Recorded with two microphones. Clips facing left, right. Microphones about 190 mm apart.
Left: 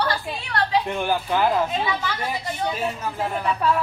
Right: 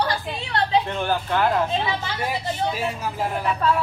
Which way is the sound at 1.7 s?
25° right (ahead or behind).